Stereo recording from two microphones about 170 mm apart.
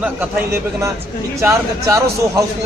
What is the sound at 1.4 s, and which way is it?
A man's voice, 15° right (ahead or behind).